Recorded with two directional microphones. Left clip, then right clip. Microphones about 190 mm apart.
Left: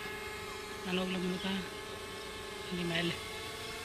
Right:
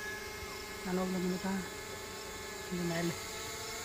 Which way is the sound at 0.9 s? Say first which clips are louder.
Even; 20° right (ahead or behind).